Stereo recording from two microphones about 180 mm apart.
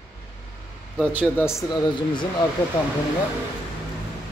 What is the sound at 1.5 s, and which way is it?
Speech, 20° left (ahead or behind).